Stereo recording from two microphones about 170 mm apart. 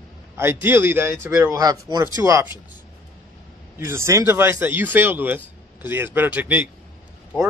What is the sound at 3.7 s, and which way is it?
Speech, 15° right (ahead or behind).